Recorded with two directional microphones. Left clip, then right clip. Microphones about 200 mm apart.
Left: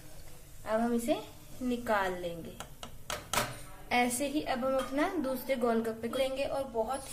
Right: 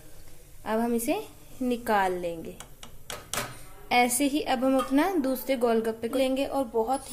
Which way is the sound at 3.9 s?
45° right (ahead or behind).